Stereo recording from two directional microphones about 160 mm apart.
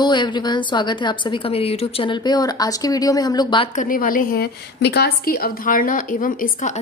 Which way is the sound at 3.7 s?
55° left (ahead or behind).